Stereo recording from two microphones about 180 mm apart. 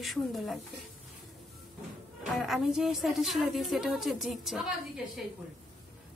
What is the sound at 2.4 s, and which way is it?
A woman's voice, centre (ahead or behind).